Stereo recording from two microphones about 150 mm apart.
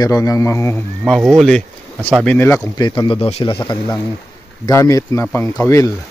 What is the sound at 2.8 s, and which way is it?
Speech, 30° left (ahead or behind).